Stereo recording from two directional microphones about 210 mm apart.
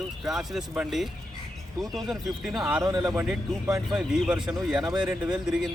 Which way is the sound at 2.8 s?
15° right (ahead or behind).